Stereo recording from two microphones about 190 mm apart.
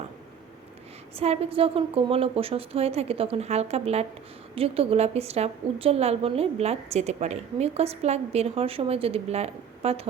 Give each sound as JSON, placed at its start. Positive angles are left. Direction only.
{"t": 1.1, "sound": "a woman's voice", "side_deg": -35}